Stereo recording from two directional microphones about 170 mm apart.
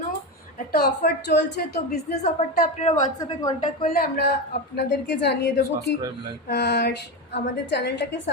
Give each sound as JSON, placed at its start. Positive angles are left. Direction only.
{"t": 0.7, "sound": "a woman's voice", "side_deg": 70}
{"t": 1.9, "sound": "a woman's voice", "side_deg": 40}
{"t": 3.2, "sound": "a woman's voice", "side_deg": 25}
{"t": 3.8, "sound": "speech", "side_deg": 65}
{"t": 4.8, "sound": "a woman's voice", "side_deg": 85}